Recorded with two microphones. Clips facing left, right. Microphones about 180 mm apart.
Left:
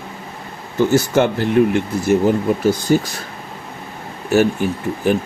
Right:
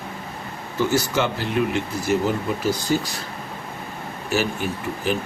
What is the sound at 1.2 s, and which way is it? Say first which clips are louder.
Speech: left 8 dB; 55° left (ahead or behind).